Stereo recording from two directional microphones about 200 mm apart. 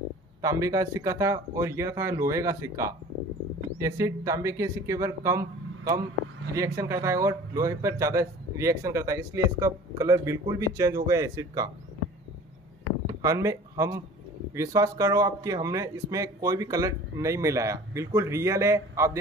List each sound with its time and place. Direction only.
0.4 s a man's voice: 15° right (ahead or behind)
13.0 s a man's voice: 15° right (ahead or behind)